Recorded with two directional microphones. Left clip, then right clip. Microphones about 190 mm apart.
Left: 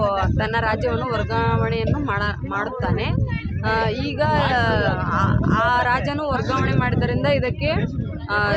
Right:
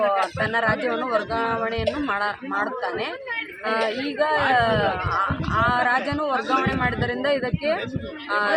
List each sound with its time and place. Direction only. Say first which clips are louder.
0.0 s speech: even; 25° left (ahead or behind)